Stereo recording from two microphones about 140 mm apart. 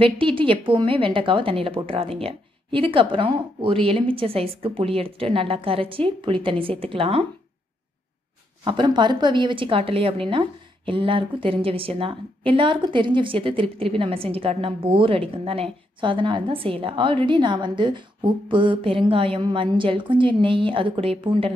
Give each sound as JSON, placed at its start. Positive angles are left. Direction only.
{"t": 0.0, "sound": "a woman's voice", "side_deg": -40}
{"t": 8.6, "sound": "a woman's voice", "side_deg": -35}